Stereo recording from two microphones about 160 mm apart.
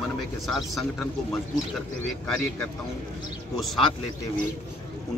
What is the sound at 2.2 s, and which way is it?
Speech, 5° left (ahead or behind).